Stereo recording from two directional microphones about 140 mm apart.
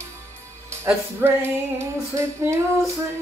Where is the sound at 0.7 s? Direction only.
15° right (ahead or behind).